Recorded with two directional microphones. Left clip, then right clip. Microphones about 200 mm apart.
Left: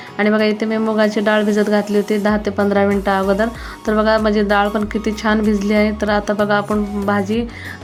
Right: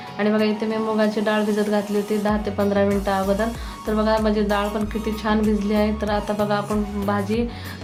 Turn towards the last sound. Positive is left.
turn(degrees=30)  # may be behind; listen again after turning